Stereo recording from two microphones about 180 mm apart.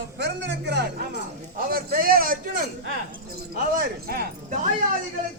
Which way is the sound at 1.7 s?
55° right (ahead or behind).